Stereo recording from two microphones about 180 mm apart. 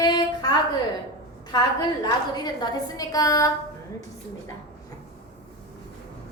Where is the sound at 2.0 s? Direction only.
25° left (ahead or behind).